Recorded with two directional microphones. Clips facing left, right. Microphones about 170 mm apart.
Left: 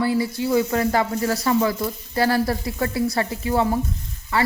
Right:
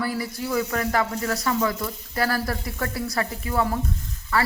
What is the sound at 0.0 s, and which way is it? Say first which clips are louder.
Speech: left 6 dB; 25° left (ahead or behind).